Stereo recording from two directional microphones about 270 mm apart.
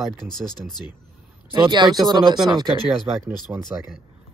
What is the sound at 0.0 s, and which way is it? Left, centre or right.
Speech, centre.